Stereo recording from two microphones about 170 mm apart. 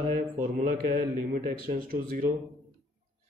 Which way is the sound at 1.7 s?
60° right (ahead or behind).